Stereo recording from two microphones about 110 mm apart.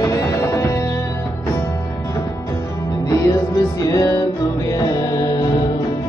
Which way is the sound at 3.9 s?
30° left (ahead or behind).